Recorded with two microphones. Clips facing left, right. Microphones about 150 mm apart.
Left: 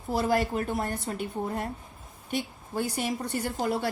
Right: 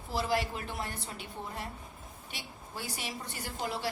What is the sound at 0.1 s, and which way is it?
A woman's voice, 50° left (ahead or behind).